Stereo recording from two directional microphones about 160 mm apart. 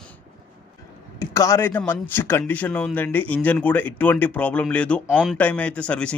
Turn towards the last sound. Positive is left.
turn(degrees=5)  # may be behind; listen again after turning